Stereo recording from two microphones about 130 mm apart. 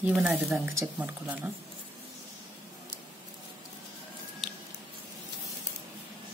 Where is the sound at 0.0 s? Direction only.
10° right (ahead or behind).